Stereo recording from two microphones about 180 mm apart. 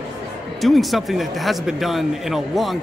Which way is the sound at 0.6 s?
Centre (ahead or behind).